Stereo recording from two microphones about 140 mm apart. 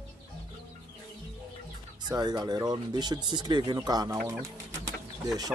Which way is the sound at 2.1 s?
30° right (ahead or behind).